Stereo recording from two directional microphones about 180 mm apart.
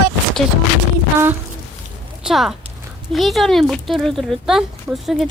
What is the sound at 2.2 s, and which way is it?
A woman's voice, centre (ahead or behind).